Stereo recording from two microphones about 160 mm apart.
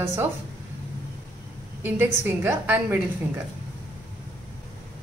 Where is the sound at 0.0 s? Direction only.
15° right (ahead or behind).